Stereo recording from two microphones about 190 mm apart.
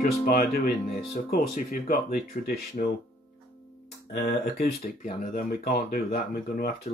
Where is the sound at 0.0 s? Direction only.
50° left (ahead or behind).